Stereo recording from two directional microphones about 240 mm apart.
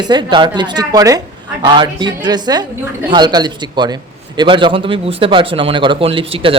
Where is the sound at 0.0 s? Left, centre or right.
Centre.